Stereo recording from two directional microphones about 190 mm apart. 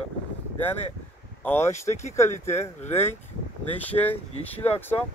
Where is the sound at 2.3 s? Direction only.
35° left (ahead or behind).